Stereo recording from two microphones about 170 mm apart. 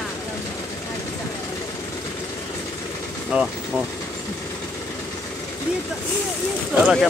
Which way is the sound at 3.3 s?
5° right (ahead or behind).